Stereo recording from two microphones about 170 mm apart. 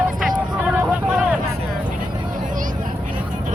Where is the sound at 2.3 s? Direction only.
50° right (ahead or behind).